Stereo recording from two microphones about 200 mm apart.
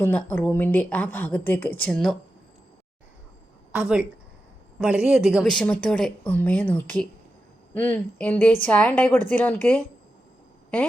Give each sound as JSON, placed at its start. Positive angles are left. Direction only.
{"t": 0.0, "sound": "a woman's voice", "side_deg": 10}
{"t": 3.7, "sound": "a woman's voice", "side_deg": -5}